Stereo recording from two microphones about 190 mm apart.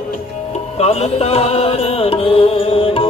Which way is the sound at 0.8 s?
35° left (ahead or behind).